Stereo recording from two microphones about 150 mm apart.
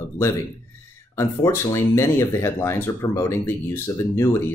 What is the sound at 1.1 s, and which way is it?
Speech, 20° left (ahead or behind).